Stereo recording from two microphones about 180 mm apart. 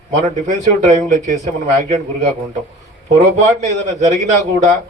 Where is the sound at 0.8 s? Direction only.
45° right (ahead or behind).